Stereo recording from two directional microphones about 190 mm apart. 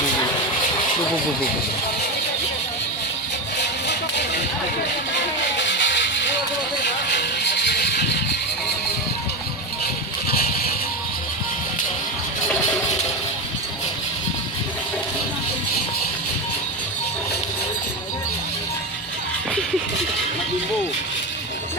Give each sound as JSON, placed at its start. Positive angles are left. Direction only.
{"t": 5.1, "sound": "vehicle", "side_deg": 70}
{"t": 6.8, "sound": "music", "side_deg": 65}